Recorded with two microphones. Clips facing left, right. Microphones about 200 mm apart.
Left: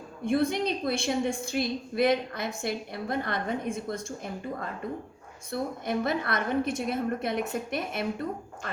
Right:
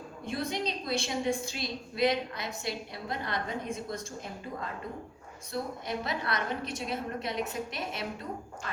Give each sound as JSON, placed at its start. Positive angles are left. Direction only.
{"t": 0.3, "sound": "a woman's voice", "side_deg": 55}
{"t": 5.5, "sound": "a woman's voice", "side_deg": 55}